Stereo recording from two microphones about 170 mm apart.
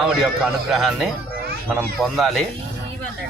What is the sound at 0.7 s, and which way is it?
Speech, centre (ahead or behind).